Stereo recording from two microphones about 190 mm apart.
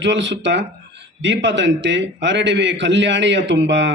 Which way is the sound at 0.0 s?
75° right (ahead or behind).